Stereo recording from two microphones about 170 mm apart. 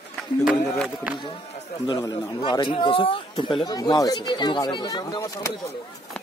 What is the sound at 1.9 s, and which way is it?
Speech, 25° left (ahead or behind).